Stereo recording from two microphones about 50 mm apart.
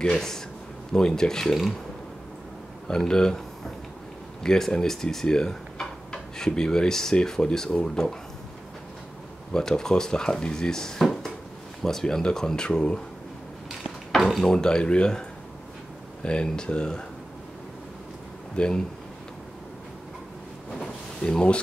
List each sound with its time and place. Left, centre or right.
0.0 s speech: centre
3.1 s speech: centre
9.5 s speech: centre
14.1 s speech: centre
14.5 s speech: centre
18.6 s speech: left
20.7 s a sound: centre